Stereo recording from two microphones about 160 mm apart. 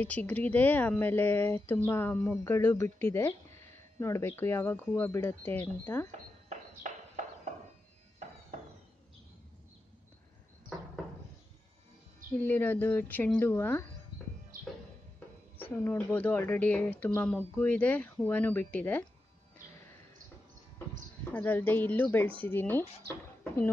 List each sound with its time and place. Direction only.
0.0 s speech: 10° left (ahead or behind)
12.4 s speech: 10° left (ahead or behind)
14.5 s music: 60° right (ahead or behind)
15.1 s speech: 15° left (ahead or behind)
21.2 s speech: 10° left (ahead or behind)